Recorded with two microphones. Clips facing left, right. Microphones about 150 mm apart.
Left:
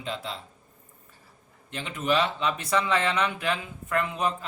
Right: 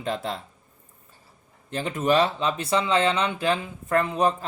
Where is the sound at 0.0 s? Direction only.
50° right (ahead or behind).